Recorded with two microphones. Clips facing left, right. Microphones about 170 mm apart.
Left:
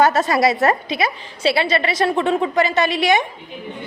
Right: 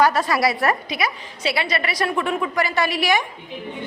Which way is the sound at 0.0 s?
25° left (ahead or behind).